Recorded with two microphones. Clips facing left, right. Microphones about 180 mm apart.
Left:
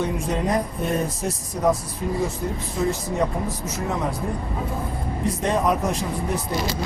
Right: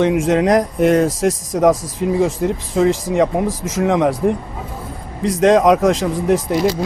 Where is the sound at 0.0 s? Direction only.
90° right.